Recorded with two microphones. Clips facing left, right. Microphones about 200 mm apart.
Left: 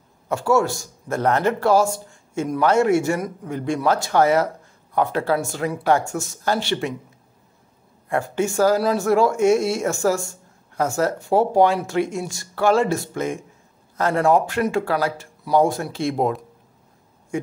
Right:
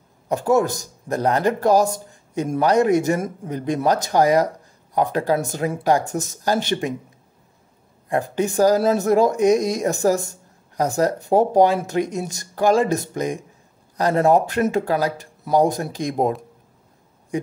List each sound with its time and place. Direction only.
0.3 s speech: 15° right (ahead or behind)
8.1 s speech: 15° right (ahead or behind)